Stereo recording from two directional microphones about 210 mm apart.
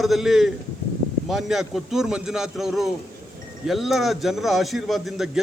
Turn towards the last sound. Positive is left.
turn(degrees=0)  # may be behind; listen again after turning